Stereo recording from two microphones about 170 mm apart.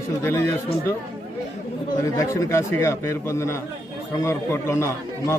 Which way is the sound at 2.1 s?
20° left (ahead or behind).